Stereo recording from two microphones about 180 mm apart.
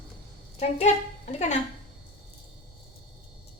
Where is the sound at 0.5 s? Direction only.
40° left (ahead or behind).